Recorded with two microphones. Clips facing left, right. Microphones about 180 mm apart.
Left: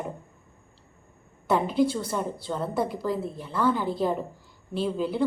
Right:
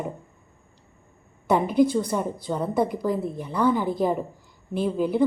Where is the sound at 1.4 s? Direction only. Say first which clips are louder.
Right 3 dB; 15° right (ahead or behind).